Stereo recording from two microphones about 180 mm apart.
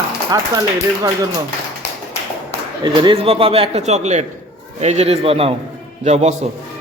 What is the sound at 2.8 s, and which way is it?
A man's voice, 30° right (ahead or behind).